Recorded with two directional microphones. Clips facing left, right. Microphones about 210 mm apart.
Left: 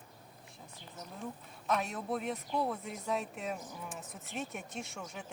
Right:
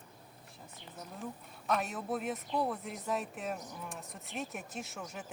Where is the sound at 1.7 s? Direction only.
Centre (ahead or behind).